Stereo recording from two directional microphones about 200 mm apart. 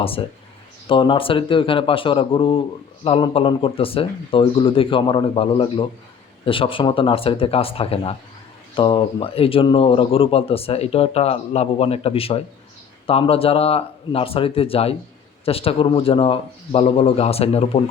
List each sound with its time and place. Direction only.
0.0 s speech: 30° left (ahead or behind)